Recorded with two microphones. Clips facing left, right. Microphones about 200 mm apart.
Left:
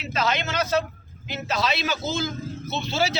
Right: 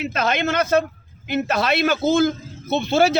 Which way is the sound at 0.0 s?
55° right (ahead or behind).